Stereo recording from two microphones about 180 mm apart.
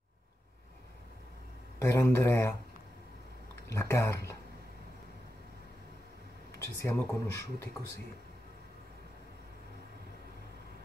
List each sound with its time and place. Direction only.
1.8 s speech: 15° left (ahead or behind)
3.6 s speech: 15° left (ahead or behind)
6.6 s speech: 15° left (ahead or behind)